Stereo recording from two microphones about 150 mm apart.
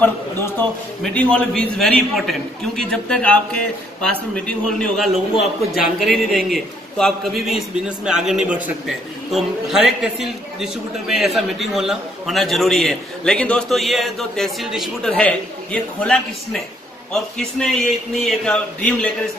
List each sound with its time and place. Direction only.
0.0 s a man's voice: 10° left (ahead or behind)